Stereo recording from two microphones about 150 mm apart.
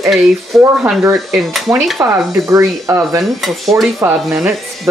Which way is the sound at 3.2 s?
Centre (ahead or behind).